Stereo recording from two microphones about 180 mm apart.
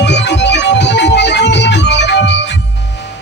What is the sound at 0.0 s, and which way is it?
Music, 70° left (ahead or behind).